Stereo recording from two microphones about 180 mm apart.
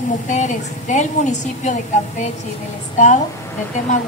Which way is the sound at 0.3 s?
40° left (ahead or behind).